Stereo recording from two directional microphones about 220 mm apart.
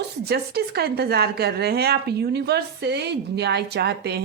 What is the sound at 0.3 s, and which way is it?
A woman's voice, 45° right (ahead or behind).